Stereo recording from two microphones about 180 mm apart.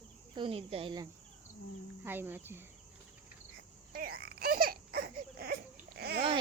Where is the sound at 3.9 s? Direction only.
60° right (ahead or behind).